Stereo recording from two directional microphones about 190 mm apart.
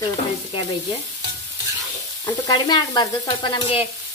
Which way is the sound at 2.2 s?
20° left (ahead or behind).